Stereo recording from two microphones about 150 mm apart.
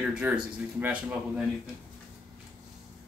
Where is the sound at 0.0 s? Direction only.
5° right (ahead or behind).